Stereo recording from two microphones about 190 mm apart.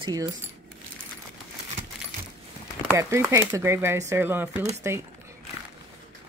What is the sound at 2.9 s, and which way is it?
Speech, 15° right (ahead or behind).